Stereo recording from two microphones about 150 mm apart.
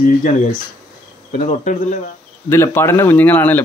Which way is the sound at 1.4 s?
55° left (ahead or behind).